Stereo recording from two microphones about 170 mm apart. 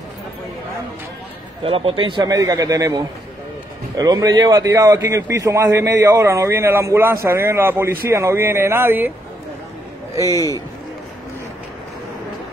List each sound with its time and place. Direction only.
1.6 s a man's voice: 35° right (ahead or behind); by 9.1 s 10° right (ahead or behind)